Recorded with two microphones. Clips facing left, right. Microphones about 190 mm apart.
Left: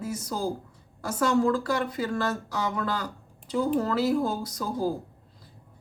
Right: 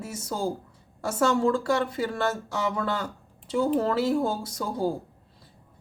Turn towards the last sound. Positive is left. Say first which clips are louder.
# even
turn(degrees=-25)  # may be behind; listen again after turning